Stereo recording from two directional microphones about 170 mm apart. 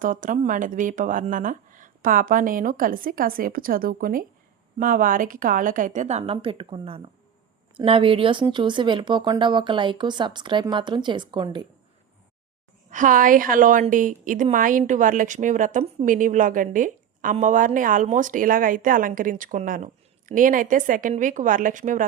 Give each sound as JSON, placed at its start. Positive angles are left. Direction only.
{"t": 0.0, "sound": "a woman's voice", "side_deg": -50}
{"t": 12.9, "sound": "a woman's voice", "side_deg": -50}
{"t": 16.7, "sound": "a sound", "side_deg": -50}
{"t": 17.3, "sound": "a woman's voice", "side_deg": -50}